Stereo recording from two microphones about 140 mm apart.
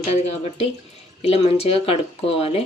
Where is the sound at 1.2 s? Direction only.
45° left (ahead or behind).